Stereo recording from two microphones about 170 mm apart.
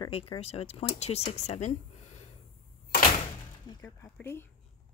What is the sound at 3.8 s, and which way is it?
Speech, 10° left (ahead or behind).